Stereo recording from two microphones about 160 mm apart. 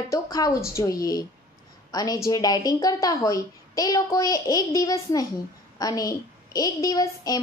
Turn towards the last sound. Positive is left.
turn(degrees=25)  # may be behind; listen again after turning